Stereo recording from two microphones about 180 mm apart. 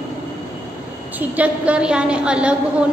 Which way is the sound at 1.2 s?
10° right (ahead or behind).